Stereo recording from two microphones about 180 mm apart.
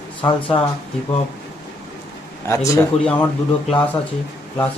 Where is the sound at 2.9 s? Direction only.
35° left (ahead or behind).